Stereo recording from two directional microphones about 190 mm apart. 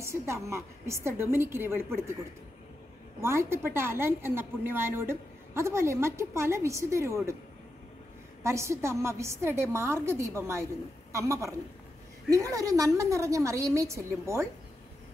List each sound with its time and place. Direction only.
0.0 s a woman's voice: 15° right (ahead or behind)
3.2 s a woman's voice: 15° right (ahead or behind)
8.5 s a woman's voice: 15° right (ahead or behind)